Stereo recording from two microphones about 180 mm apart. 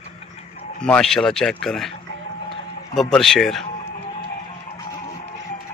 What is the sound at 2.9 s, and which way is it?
Speech, centre (ahead or behind).